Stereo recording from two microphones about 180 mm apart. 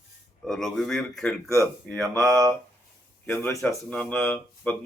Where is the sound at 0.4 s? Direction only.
Centre (ahead or behind).